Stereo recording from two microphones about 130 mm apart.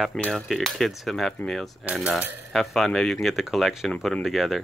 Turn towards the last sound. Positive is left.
turn(degrees=0)  # may be behind; listen again after turning